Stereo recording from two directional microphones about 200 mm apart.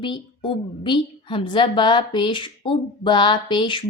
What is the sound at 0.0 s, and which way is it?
A woman's voice, 25° left (ahead or behind).